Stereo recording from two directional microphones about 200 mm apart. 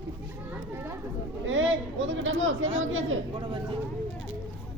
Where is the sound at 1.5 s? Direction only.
80° right.